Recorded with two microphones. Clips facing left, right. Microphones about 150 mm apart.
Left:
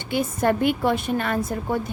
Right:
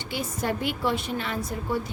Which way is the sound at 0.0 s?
55° left (ahead or behind).